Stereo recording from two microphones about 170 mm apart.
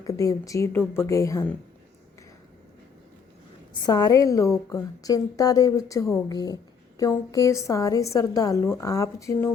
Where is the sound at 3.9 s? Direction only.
20° left (ahead or behind).